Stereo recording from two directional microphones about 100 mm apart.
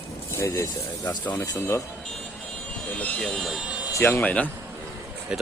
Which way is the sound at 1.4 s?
30° left (ahead or behind).